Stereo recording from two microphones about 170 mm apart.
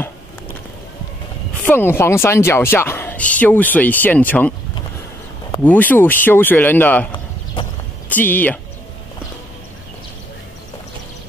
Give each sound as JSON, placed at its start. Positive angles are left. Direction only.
{"t": 1.6, "sound": "speech", "side_deg": 10}
{"t": 5.6, "sound": "speech", "side_deg": 10}
{"t": 8.1, "sound": "speech", "side_deg": 10}